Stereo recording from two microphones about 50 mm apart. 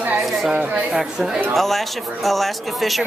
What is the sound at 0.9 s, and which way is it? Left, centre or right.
Speech, centre.